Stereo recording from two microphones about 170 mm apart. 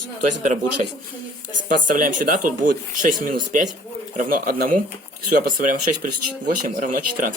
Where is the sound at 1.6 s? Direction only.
50° right (ahead or behind).